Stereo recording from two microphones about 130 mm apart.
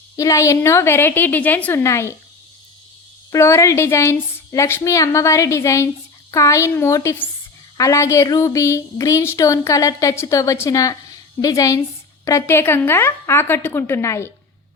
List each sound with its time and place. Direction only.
0.2 s speech: 25° left (ahead or behind)
3.3 s speech: 20° left (ahead or behind)